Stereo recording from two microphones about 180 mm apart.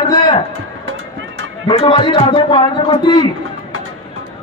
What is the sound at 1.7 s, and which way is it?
Speech, 30° left (ahead or behind).